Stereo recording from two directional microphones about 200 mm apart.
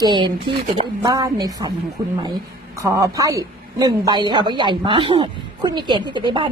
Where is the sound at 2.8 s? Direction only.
15° right (ahead or behind).